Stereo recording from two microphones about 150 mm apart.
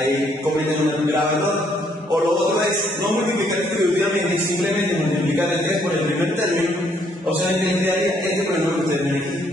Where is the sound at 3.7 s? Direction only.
Centre (ahead or behind).